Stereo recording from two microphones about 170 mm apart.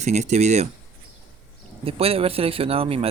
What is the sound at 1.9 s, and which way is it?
Speech, 35° right (ahead or behind).